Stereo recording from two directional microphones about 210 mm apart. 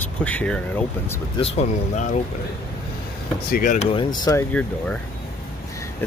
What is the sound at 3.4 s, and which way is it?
Speech, 40° left (ahead or behind).